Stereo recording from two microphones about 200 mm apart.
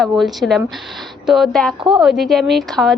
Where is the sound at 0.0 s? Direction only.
Centre (ahead or behind).